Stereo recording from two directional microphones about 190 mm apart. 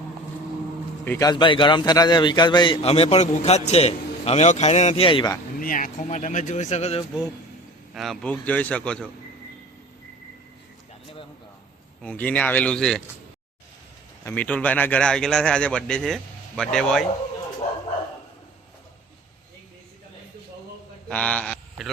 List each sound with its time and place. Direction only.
1.0 s a man's voice: 15° left (ahead or behind)
5.5 s speech: 45° left (ahead or behind)
7.9 s a man's voice: centre (ahead or behind)
12.0 s speech: 10° left (ahead or behind)
14.3 s a man's voice: 5° left (ahead or behind)
21.1 s a man's voice: 5° left (ahead or behind)